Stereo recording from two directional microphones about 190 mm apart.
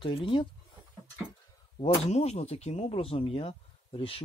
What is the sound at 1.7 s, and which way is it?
Speech, 30° left (ahead or behind).